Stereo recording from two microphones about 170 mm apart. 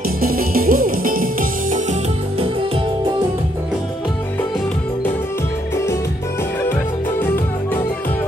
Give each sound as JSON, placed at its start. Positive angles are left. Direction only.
{"t": 0.2, "sound": "music", "side_deg": -60}